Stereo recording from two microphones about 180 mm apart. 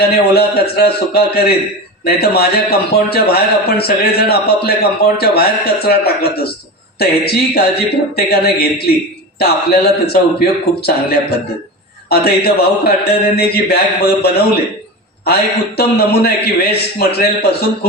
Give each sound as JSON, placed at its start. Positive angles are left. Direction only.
{"t": 0.0, "sound": "a man's voice", "side_deg": 60}
{"t": 15.2, "sound": "a man's voice", "side_deg": 60}